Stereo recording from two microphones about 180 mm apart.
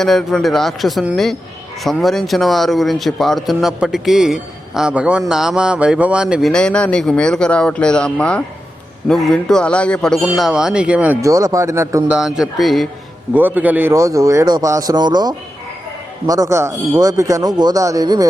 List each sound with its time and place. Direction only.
0.0 s speech: centre (ahead or behind); by 12.1 s 15° right (ahead or behind)
12.1 s a man's voice: centre (ahead or behind); by 18.3 s 20° right (ahead or behind)